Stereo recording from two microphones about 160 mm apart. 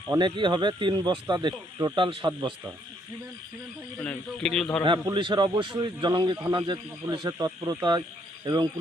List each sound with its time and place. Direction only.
0.1 s speech: 30° right (ahead or behind)
4.0 s a man's voice: 5° left (ahead or behind)
5.0 s speech: 30° right (ahead or behind)